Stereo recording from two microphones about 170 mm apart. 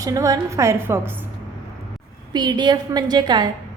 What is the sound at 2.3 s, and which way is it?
A woman's voice, 25° right (ahead or behind).